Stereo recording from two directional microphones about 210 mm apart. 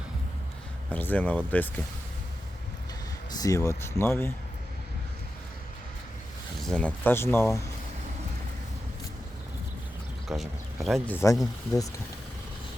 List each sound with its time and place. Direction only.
0.9 s speech: 10° left (ahead or behind)
3.3 s speech: 15° left (ahead or behind)
6.6 s speech: 5° left (ahead or behind)
10.2 s speech: centre (ahead or behind)